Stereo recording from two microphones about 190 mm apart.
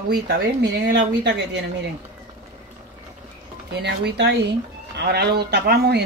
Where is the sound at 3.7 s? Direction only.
60° right (ahead or behind).